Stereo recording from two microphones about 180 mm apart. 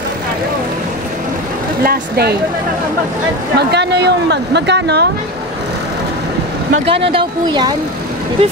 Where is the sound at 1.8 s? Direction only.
60° right (ahead or behind).